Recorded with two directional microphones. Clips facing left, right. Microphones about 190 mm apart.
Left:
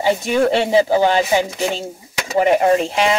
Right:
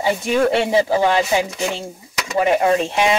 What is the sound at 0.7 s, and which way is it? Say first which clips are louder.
Speech: left 2 dB; 25° left (ahead or behind).